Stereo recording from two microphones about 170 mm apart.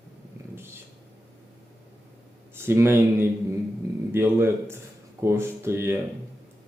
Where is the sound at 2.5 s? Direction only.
15° right (ahead or behind).